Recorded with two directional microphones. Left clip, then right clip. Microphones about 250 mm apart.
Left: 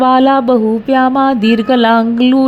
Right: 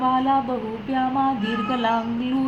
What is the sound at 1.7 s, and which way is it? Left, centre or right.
Speech, left.